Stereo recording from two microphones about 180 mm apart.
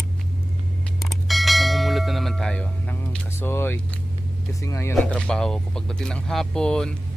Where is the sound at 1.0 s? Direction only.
Centre (ahead or behind).